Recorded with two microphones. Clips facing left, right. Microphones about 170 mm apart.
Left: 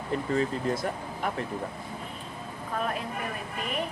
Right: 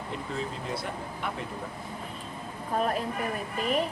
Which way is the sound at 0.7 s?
45° left (ahead or behind).